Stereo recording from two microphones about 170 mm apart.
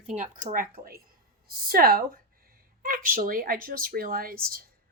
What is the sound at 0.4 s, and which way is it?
Speech, 55° right (ahead or behind).